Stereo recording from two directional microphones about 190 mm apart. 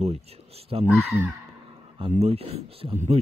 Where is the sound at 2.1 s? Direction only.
30° right (ahead or behind).